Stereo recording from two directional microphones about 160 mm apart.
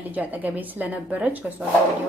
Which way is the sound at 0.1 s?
10° right (ahead or behind).